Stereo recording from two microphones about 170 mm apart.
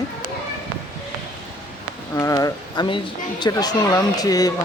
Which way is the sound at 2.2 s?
20° left (ahead or behind).